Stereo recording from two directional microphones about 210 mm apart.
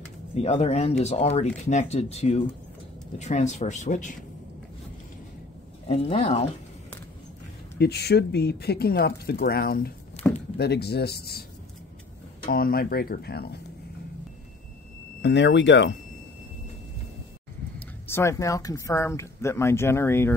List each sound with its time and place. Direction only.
0.3 s speech: 30° left (ahead or behind)
5.9 s speech: 30° left (ahead or behind)
7.8 s speech: 50° left (ahead or behind)
10.2 s a sound: 5° left (ahead or behind)
10.6 s speech: 50° left (ahead or behind)
12.4 s speech: 45° left (ahead or behind)
15.2 s speech: 55° left (ahead or behind)
17.7 s speech: 10° left (ahead or behind)